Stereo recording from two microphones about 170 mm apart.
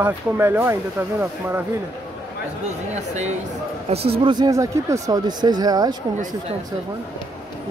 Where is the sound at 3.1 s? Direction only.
40° right (ahead or behind).